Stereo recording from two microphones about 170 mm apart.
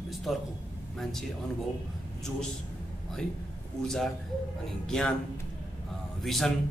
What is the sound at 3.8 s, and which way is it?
A man's voice, 5° left (ahead or behind).